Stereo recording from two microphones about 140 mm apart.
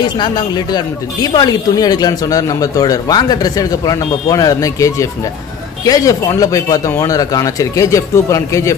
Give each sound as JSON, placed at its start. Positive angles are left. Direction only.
{"t": 0.0, "sound": "speech", "side_deg": 30}